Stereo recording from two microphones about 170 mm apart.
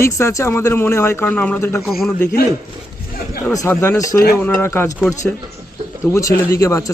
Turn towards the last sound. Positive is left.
turn(degrees=20)  # may be behind; listen again after turning